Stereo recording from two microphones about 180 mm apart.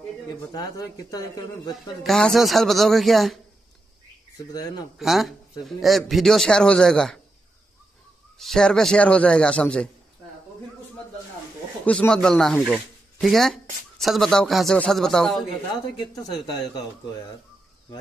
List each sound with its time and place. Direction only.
0.5 s speech: 20° left (ahead or behind)
2.0 s a man's voice: centre (ahead or behind)
4.4 s speech: 20° left (ahead or behind)
4.9 s a man's voice: centre (ahead or behind)
8.4 s a man's voice: 5° left (ahead or behind)
11.8 s a man's voice: 5° left (ahead or behind)
15.7 s speech: 25° left (ahead or behind)